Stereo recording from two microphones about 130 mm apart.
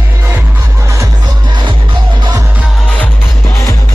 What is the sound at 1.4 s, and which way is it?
Music, 35° right (ahead or behind).